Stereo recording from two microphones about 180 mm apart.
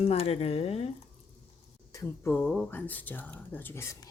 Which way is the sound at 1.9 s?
15° left (ahead or behind).